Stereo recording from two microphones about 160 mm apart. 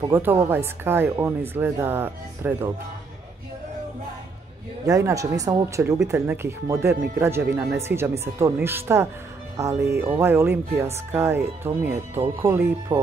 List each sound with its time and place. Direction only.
0.1 s speech: 15° right (ahead or behind)
4.8 s speech: 20° right (ahead or behind)